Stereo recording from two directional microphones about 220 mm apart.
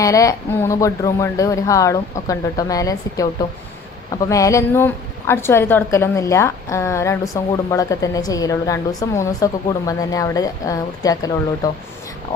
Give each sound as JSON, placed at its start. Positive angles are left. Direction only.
{"t": 0.0, "sound": "a woman's voice", "side_deg": 15}